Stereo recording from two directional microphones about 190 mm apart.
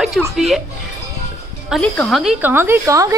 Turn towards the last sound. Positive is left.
turn(degrees=-15)  # may be behind; listen again after turning